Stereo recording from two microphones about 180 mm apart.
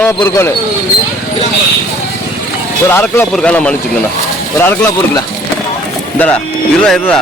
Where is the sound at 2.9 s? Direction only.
10° left (ahead or behind).